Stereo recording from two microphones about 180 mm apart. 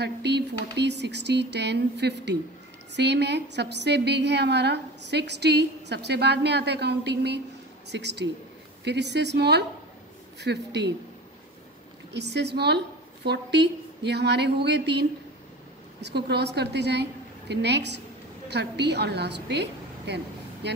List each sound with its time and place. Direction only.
0.0 s a woman's voice: 70° right (ahead or behind)
12.1 s a woman's voice: 70° right (ahead or behind)